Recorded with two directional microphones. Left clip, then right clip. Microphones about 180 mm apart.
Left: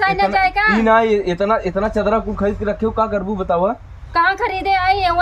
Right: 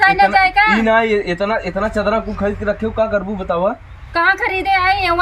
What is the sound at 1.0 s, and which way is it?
A man's voice, 50° left (ahead or behind).